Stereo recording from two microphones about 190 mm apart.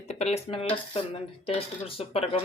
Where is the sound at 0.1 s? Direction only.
35° left (ahead or behind).